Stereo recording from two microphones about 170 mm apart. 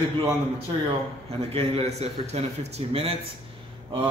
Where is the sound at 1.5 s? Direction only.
35° right (ahead or behind).